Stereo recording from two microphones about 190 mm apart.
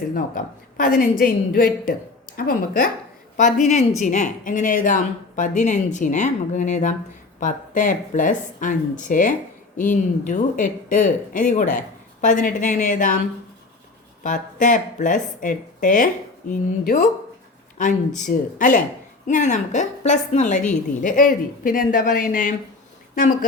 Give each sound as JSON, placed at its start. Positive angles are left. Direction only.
{"t": 0.1, "sound": "a woman's voice", "side_deg": 45}
{"t": 14.3, "sound": "a woman's voice", "side_deg": 45}